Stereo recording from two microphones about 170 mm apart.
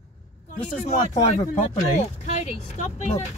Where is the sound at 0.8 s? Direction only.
45° left (ahead or behind).